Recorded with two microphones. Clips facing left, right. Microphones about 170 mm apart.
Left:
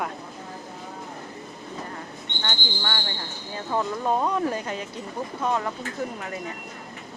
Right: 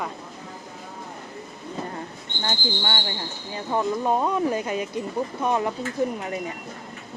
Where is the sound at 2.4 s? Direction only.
25° right (ahead or behind).